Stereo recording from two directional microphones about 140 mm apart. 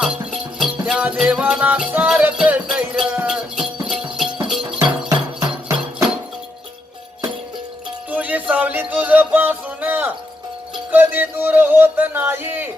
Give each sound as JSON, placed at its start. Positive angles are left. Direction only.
{"t": 0.0, "sound": "music", "side_deg": -5}
{"t": 5.0, "sound": "music", "side_deg": -25}
{"t": 8.1, "sound": "music", "side_deg": -10}